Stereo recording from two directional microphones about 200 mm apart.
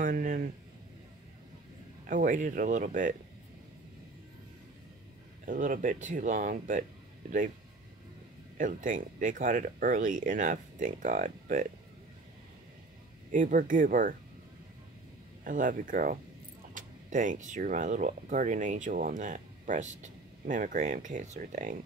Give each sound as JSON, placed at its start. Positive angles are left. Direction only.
{"t": 0.0, "sound": "speech", "side_deg": -40}
{"t": 2.0, "sound": "speech", "side_deg": -40}
{"t": 5.4, "sound": "speech", "side_deg": -40}
{"t": 8.5, "sound": "speech", "side_deg": -40}
{"t": 13.3, "sound": "speech", "side_deg": -40}
{"t": 15.4, "sound": "speech", "side_deg": -40}